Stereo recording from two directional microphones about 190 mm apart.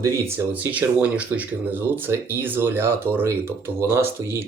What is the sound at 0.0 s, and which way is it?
Speech, 10° right (ahead or behind).